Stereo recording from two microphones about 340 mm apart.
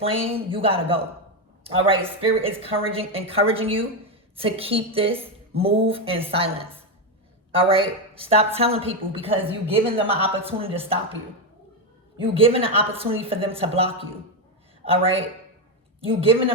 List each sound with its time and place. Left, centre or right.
0.0 s a woman's voice: centre
12.2 s a woman's voice: centre